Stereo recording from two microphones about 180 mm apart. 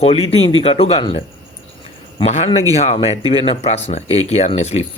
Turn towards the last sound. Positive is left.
turn(degrees=35)  # may be behind; listen again after turning